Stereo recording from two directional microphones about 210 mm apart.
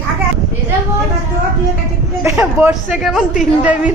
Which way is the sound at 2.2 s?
10° right (ahead or behind).